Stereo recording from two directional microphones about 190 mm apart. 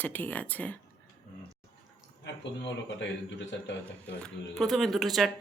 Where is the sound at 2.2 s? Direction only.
70° left (ahead or behind).